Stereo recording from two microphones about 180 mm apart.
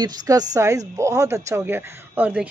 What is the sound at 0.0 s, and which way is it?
A woman's voice, 20° right (ahead or behind).